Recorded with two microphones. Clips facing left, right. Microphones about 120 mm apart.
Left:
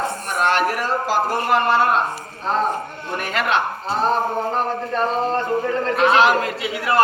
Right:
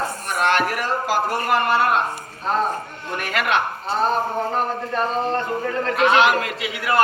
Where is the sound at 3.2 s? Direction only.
30° left (ahead or behind).